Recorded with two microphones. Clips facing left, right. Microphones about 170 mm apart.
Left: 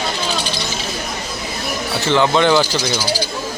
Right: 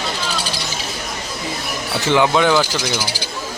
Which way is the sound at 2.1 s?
10° right (ahead or behind).